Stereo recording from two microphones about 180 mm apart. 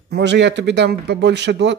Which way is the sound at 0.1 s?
75° right (ahead or behind).